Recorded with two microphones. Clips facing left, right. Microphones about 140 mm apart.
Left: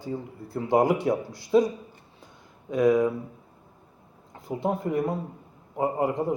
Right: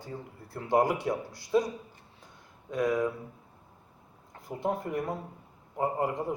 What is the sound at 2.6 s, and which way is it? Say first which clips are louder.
Speech: left 7 dB; 20° left (ahead or behind).